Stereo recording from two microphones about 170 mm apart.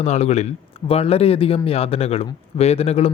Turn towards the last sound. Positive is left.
turn(degrees=35)  # may be behind; listen again after turning